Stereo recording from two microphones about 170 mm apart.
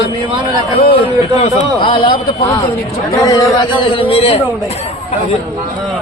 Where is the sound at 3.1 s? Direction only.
20° left (ahead or behind); by 4.9 s 35° left (ahead or behind).